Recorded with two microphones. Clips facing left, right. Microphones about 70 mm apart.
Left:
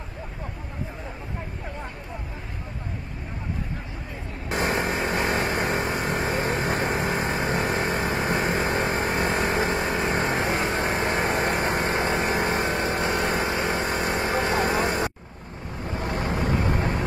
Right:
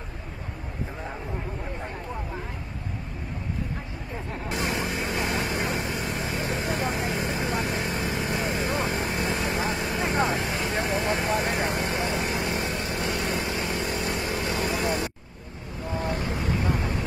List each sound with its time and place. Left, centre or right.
4.5 s vehicle: left
15.9 s boat: left